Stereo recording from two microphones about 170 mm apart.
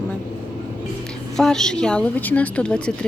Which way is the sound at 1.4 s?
5° left (ahead or behind).